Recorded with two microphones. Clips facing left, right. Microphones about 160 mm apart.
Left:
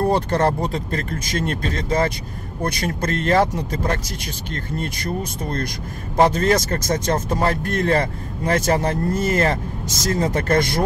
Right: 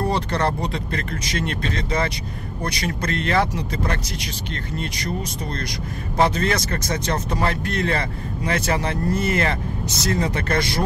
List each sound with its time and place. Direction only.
0.1 s speech: 45° left (ahead or behind)